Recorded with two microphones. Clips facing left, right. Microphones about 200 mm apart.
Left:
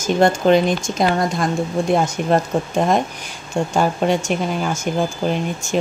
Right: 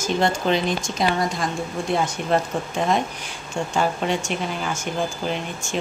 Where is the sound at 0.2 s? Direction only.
50° left (ahead or behind).